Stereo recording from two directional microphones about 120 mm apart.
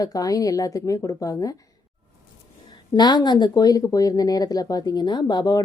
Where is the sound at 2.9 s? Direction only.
35° left (ahead or behind).